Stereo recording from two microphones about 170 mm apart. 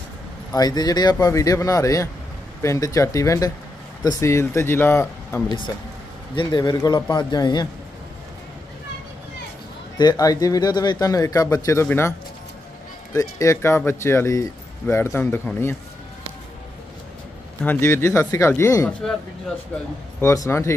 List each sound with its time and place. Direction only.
0.5 s speech: 25° left (ahead or behind)
6.3 s speech: 25° left (ahead or behind)
9.9 s speech: 20° left (ahead or behind)
13.1 s speech: 20° left (ahead or behind)
17.6 s speech: 15° left (ahead or behind)
20.2 s speech: 15° left (ahead or behind)